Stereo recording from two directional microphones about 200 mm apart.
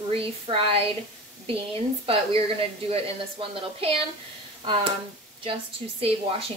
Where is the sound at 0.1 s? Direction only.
30° right (ahead or behind).